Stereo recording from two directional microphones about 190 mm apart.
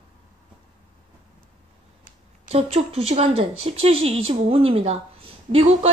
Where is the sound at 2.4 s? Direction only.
35° right (ahead or behind).